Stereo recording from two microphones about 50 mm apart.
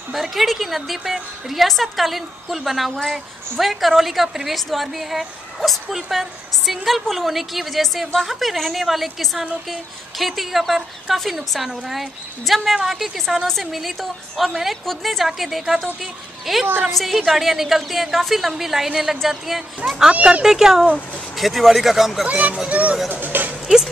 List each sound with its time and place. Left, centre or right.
0.1 s a woman's voice: centre
20.1 s speech: right
20.4 s a woman's voice: centre
22.3 s speech: right